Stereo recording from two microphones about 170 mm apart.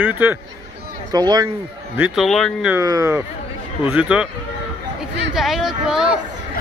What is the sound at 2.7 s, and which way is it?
Speech, 20° right (ahead or behind).